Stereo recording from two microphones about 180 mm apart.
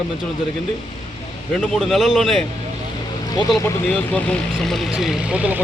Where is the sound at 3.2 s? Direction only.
20° left (ahead or behind).